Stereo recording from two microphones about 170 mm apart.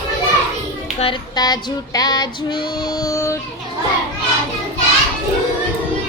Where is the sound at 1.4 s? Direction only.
25° left (ahead or behind).